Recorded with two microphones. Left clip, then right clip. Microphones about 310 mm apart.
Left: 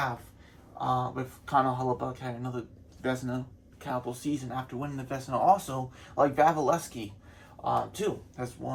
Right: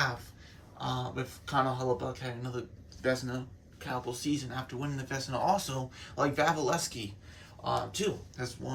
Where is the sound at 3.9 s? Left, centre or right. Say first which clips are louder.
Left 2 dB; centre.